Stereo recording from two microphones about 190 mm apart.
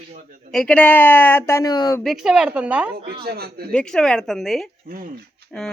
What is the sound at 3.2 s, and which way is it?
Speech, 55° right (ahead or behind).